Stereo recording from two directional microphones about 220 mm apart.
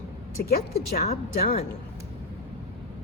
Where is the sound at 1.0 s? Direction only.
30° left (ahead or behind).